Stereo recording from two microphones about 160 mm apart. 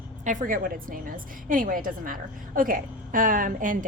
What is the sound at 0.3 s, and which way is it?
A woman's voice, 55° right (ahead or behind).